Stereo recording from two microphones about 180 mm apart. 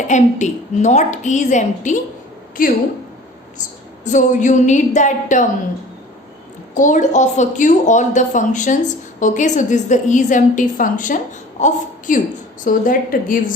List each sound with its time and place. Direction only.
0.1 s a woman's voice: 40° left (ahead or behind)
4.0 s a woman's voice: 45° left (ahead or behind)
6.7 s a woman's voice: 45° left (ahead or behind)